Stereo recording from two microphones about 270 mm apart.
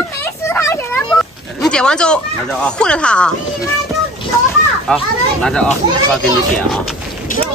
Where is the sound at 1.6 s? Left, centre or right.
Centre.